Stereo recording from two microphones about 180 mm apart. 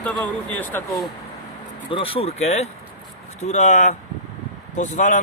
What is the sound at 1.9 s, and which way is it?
Speech, 30° left (ahead or behind).